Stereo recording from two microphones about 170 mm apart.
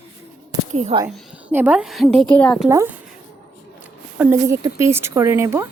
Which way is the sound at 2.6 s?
15° right (ahead or behind).